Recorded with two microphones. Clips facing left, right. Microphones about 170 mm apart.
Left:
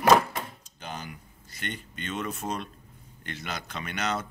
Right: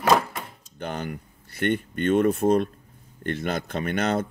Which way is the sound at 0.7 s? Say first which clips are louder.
Right 9 dB; 60° right (ahead or behind).